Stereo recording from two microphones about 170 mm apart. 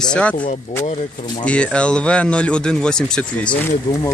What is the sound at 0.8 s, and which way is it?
Speech, 40° left (ahead or behind).